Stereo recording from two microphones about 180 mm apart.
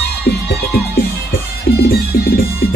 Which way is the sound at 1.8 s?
55° left (ahead or behind).